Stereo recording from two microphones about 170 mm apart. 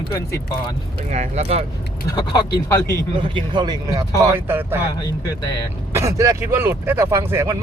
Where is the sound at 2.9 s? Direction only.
30° right (ahead or behind).